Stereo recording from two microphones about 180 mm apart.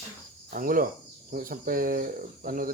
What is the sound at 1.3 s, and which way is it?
Speech, 50° right (ahead or behind).